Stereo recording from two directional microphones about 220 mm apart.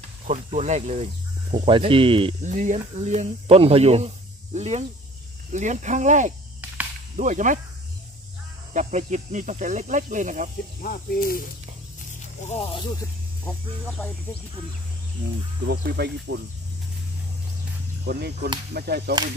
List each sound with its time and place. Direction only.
0.3 s speech: 30° right (ahead or behind)
8.7 s speech: 35° right (ahead or behind)
10.8 s speech: 40° left (ahead or behind)
12.0 s zipper: 30° left (ahead or behind)
13.5 s speech: 5° left (ahead or behind)
15.6 s speech: 50° right (ahead or behind)
18.0 s speech: 45° right (ahead or behind)